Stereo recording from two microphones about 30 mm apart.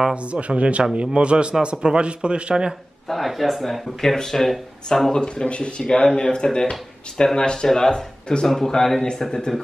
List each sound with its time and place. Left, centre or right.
0.1 s a man's voice: right
3.1 s a man's voice: centre
5.1 s speech: left
6.2 s speech: left
7.3 s speech: left
7.6 s speech: centre
8.5 s a man's voice: centre